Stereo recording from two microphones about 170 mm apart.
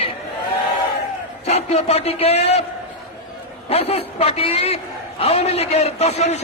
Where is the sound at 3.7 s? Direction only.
35° left (ahead or behind).